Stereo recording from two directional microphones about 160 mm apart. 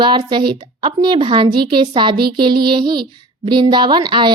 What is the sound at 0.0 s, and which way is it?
A woman's voice, 30° right (ahead or behind).